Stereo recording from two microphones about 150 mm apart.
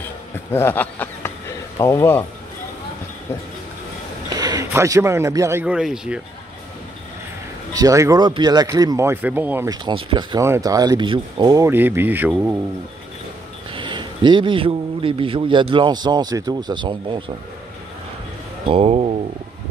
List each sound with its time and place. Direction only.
0.5 s a sound: 15° left (ahead or behind)
1.8 s speech: 20° left (ahead or behind)
4.4 s speech: 25° right (ahead or behind); by 6.2 s 5° right (ahead or behind)
7.7 s speech: 25° right (ahead or behind)
9.7 s speech: 35° right (ahead or behind)
10.4 s speech: 20° right (ahead or behind)
13.7 s a man's voice: 35° right (ahead or behind)
18.7 s a man's voice: 40° right (ahead or behind)